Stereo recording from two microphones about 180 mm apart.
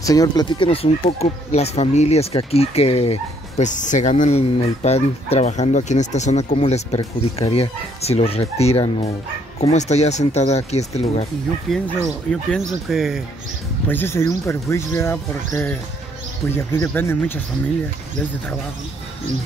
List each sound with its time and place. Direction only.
0.0 s speech: 20° left (ahead or behind); by 11.2 s 35° left (ahead or behind)
11.7 s speech: centre (ahead or behind)
13.8 s speech: 10° left (ahead or behind)